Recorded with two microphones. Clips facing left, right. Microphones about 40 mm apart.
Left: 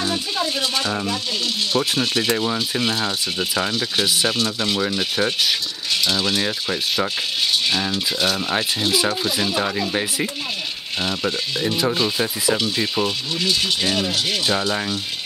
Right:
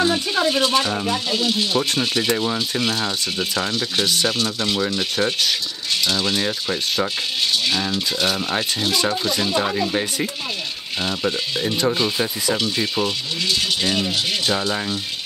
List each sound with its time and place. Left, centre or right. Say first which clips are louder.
0.5 s speech: right 5 dB; right
0.8 s speech: right 1 dB; centre